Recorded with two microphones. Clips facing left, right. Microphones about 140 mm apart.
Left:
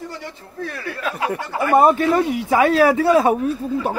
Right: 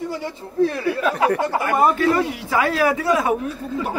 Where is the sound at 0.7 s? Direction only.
25° right (ahead or behind).